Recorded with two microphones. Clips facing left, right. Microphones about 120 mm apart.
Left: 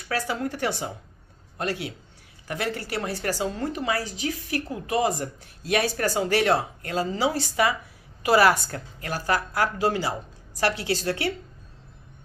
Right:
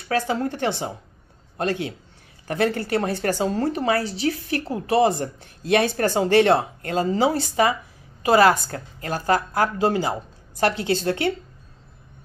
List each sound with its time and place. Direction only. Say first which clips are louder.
0.1 s a woman's voice: right 5 dB; 30° right (ahead or behind); by 3.3 s 45° right (ahead or behind)
3.4 s a woman's voice: right 7 dB; 35° right (ahead or behind)